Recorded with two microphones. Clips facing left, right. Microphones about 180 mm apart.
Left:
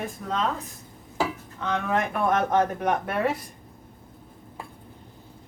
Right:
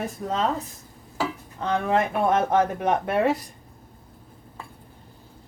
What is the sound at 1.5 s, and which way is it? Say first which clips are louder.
A man's voice: right 3 dB; 35° right (ahead or behind).